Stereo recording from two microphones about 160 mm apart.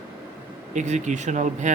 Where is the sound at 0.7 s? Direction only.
45° right (ahead or behind).